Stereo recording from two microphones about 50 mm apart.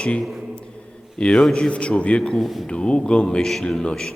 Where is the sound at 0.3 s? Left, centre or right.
Centre.